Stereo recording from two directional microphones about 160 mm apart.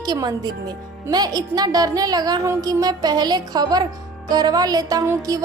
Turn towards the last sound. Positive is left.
turn(degrees=-20)  # may be behind; listen again after turning